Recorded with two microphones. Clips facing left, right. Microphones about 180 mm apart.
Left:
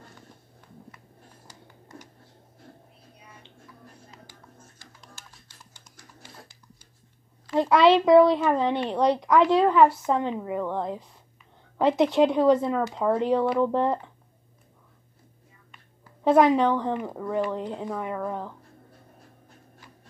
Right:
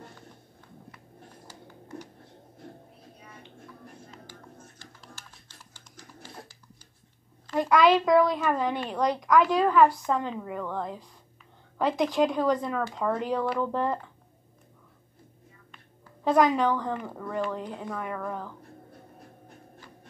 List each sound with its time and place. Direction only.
7.5 s a woman's voice: 25° left (ahead or behind)
16.3 s a woman's voice: 25° left (ahead or behind)